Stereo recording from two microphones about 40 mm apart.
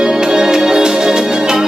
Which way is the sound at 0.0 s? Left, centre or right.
Centre.